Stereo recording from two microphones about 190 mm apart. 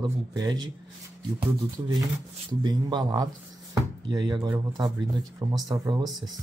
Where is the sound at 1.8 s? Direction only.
20° right (ahead or behind).